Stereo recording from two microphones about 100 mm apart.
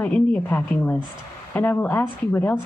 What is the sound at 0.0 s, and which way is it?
A woman's voice, 15° left (ahead or behind).